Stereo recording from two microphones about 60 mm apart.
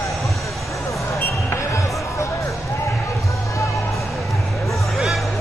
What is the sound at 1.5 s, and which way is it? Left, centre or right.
Basketball bounce, left.